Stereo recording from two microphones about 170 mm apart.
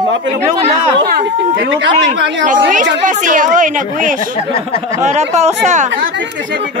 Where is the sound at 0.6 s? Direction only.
40° right (ahead or behind).